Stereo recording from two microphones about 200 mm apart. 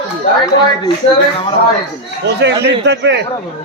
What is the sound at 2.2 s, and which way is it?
Speech, 60° right (ahead or behind).